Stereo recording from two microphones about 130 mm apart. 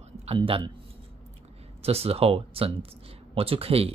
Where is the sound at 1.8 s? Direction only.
50° right (ahead or behind).